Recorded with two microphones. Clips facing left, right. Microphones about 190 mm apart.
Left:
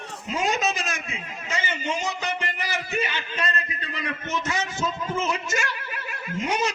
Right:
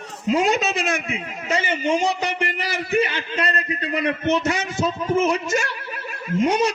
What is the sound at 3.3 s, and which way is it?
Speech, 35° right (ahead or behind).